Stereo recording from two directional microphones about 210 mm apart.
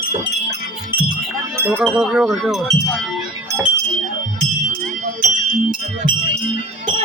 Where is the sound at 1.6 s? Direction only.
10° right (ahead or behind).